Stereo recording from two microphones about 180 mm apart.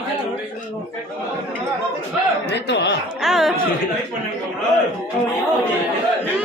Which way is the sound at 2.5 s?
70° left (ahead or behind).